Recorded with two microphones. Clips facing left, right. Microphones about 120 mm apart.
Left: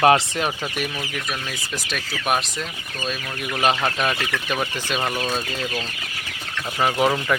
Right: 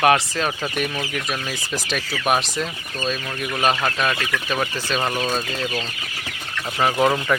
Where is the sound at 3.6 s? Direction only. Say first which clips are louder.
Even; 20° left (ahead or behind).